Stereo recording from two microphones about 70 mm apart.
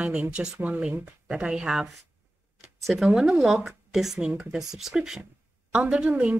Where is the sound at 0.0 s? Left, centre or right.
Centre.